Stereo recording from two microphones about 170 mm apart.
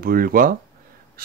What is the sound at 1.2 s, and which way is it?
Crow, 60° right (ahead or behind).